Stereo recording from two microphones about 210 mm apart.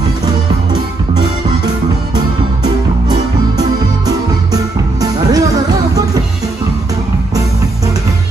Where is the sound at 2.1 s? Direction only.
20° right (ahead or behind).